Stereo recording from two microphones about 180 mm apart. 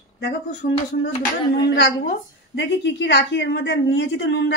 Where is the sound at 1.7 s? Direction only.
70° left (ahead or behind).